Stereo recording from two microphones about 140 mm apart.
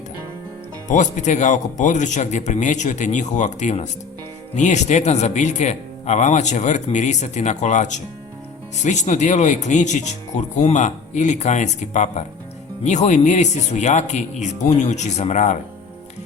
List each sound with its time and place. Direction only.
0.9 s speech: 60° left (ahead or behind)